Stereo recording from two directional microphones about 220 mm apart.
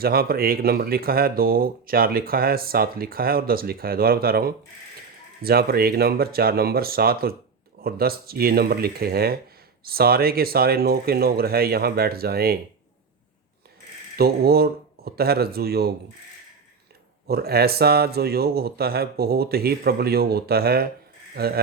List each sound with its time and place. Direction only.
0.0 s speech: 45° right (ahead or behind)
14.2 s speech: 45° right (ahead or behind)
17.2 s speech: 45° right (ahead or behind)